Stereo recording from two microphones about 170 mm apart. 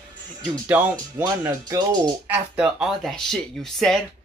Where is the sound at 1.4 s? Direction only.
25° right (ahead or behind).